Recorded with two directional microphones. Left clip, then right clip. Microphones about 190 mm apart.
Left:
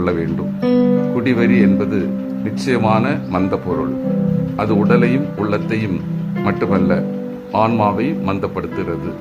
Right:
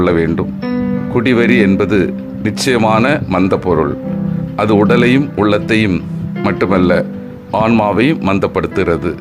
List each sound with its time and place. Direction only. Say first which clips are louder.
0.0 s speech: right 6 dB; 30° right (ahead or behind)
0.6 s music: left 4 dB; 10° left (ahead or behind)
1.1 s speech: right 5 dB; 30° right (ahead or behind)